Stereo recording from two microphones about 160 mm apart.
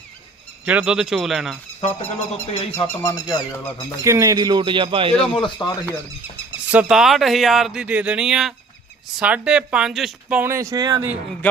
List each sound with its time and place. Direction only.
0.6 s speech: 10° right (ahead or behind)
1.8 s speech: 40° left (ahead or behind)
2.7 s speech: 20° left (ahead or behind)
4.0 s speech: 20° right (ahead or behind)
5.3 s speech: 30° left (ahead or behind)
6.7 s speech: 5° right (ahead or behind); by 11.0 s 25° right (ahead or behind)